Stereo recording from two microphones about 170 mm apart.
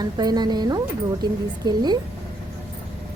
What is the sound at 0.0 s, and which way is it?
Speech, 25° right (ahead or behind).